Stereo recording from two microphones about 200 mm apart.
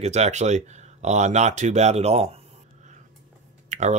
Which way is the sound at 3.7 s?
35° right (ahead or behind).